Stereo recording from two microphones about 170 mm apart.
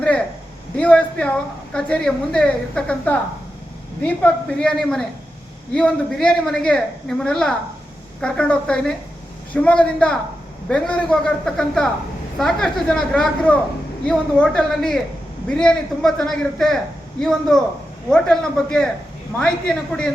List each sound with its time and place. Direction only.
0.8 s a man's voice: 5° left (ahead or behind)